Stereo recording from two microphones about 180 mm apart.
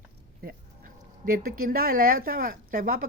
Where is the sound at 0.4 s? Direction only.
50° right (ahead or behind).